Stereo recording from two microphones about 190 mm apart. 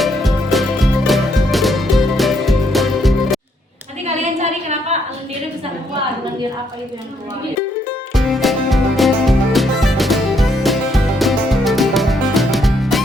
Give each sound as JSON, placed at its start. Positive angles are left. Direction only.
{"t": 0.0, "sound": "music", "side_deg": 0}
{"t": 4.0, "sound": "a sound", "side_deg": -35}
{"t": 8.1, "sound": "music", "side_deg": 0}